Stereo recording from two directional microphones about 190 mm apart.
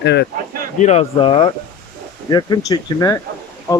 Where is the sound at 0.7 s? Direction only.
35° left (ahead or behind).